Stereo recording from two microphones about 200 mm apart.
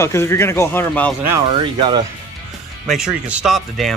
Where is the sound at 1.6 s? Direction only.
25° right (ahead or behind).